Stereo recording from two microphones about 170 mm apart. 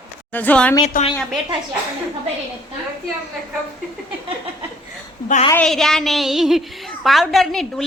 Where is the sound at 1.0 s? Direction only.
55° left (ahead or behind).